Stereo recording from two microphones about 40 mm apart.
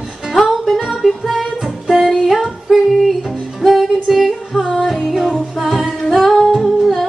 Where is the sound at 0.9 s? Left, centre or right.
Centre.